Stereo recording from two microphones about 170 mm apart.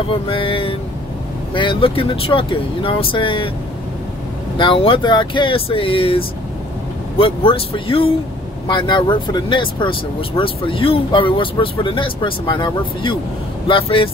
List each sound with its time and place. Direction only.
0.1 s speech: 30° left (ahead or behind)
4.6 s speech: 30° left (ahead or behind)